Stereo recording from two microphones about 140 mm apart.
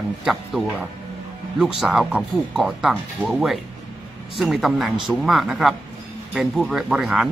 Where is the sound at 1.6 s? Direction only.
5° right (ahead or behind).